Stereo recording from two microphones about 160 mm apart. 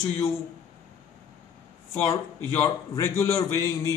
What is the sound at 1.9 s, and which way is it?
A man's voice, 15° left (ahead or behind).